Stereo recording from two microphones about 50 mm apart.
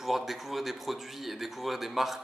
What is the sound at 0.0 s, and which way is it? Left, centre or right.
Speech, centre.